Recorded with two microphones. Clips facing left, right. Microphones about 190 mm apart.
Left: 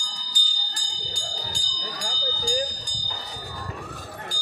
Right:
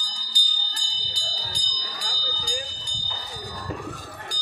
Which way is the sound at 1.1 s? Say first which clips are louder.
Left 2 dB; 50° left (ahead or behind).